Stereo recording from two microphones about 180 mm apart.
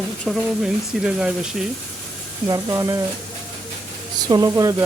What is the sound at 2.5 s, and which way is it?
Speech, 20° right (ahead or behind).